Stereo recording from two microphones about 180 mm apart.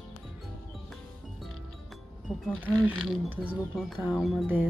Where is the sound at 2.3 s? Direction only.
5° left (ahead or behind).